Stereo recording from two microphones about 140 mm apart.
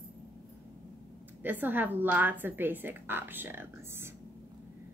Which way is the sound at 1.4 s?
15° right (ahead or behind).